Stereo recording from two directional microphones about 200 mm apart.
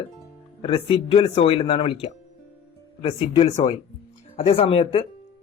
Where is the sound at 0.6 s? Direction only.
25° left (ahead or behind).